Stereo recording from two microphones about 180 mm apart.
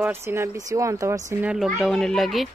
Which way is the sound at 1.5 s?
Centre (ahead or behind).